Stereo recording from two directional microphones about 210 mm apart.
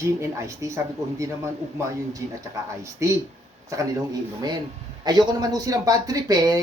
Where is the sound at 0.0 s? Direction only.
15° right (ahead or behind).